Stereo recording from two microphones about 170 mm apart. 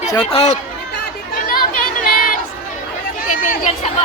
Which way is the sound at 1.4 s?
55° left (ahead or behind).